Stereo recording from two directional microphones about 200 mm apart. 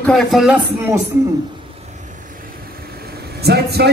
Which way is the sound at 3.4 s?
55° right (ahead or behind).